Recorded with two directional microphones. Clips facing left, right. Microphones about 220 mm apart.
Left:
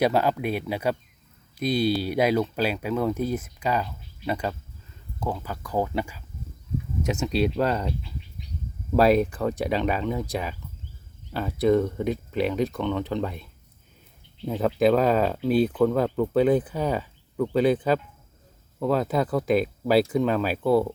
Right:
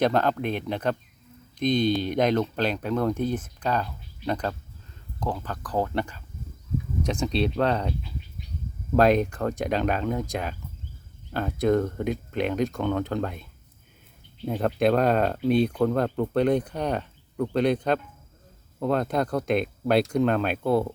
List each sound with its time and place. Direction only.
0.0 s speech: 10° left (ahead or behind)
9.0 s speech: 5° left (ahead or behind)